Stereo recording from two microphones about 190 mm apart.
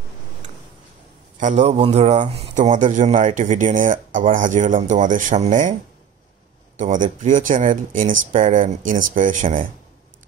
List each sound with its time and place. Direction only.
1.4 s speech: 40° right (ahead or behind)
6.8 s speech: 40° right (ahead or behind)